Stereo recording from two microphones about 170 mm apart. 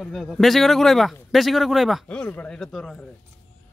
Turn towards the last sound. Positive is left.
turn(degrees=5)  # may be behind; listen again after turning